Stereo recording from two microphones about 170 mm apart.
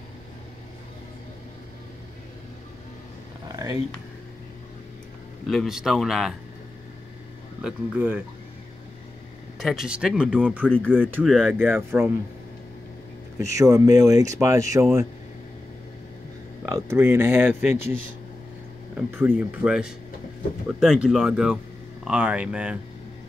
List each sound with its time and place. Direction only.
5.5 s speech: centre (ahead or behind)
7.6 s speech: 5° right (ahead or behind)
9.6 s speech: centre (ahead or behind)
10.6 s speech: 5° left (ahead or behind)
10.9 s speech: 10° right (ahead or behind)
11.2 s speech: centre (ahead or behind)
11.5 s speech: 15° right (ahead or behind)
13.4 s speech: 20° right (ahead or behind)
16.6 s speech: 15° right (ahead or behind)